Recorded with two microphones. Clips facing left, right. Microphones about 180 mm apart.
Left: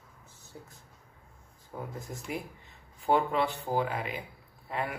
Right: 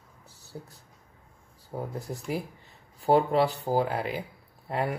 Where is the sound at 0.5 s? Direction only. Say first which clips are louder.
Right 6 dB; 45° right (ahead or behind).